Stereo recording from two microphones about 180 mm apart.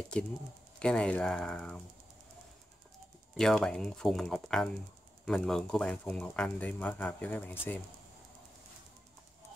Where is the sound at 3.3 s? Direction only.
5° left (ahead or behind).